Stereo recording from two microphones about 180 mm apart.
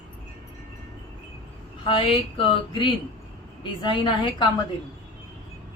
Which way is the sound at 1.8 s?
30° left (ahead or behind).